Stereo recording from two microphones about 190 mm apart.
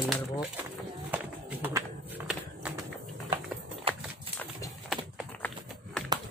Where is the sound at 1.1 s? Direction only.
10° right (ahead or behind).